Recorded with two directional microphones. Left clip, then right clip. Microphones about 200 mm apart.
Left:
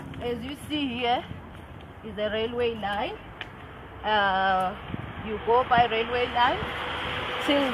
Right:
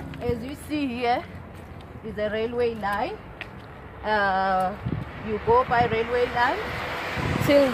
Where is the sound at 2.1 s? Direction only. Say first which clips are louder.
Right 2 dB; 20° right (ahead or behind).